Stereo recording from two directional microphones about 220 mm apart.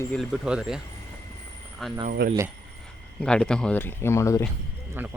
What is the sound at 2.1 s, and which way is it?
Speech, 45° right (ahead or behind).